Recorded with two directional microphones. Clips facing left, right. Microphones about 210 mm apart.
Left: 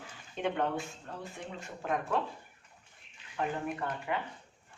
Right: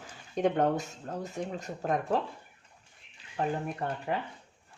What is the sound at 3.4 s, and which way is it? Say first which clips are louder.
Speech: right 2 dB; 35° right (ahead or behind).